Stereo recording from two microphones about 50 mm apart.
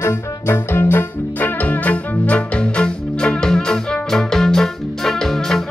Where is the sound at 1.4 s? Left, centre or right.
Left.